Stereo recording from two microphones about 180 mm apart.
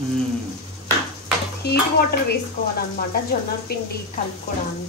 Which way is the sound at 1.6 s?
65° left (ahead or behind).